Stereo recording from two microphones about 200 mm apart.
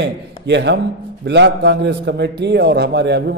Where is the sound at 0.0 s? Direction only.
60° right (ahead or behind).